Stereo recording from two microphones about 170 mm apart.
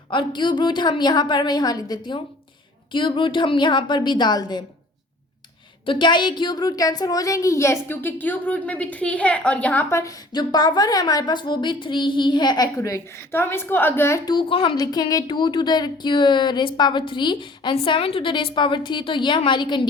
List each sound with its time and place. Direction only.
0.1 s speech: 30° left (ahead or behind)
5.8 s speech: 30° left (ahead or behind)
14.3 s speech: 30° left (ahead or behind)